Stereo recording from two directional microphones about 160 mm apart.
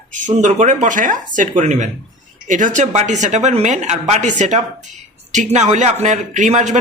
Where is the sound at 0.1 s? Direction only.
50° right (ahead or behind).